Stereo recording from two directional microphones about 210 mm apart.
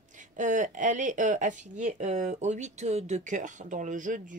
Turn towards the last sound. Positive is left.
turn(degrees=-35)  # may be behind; listen again after turning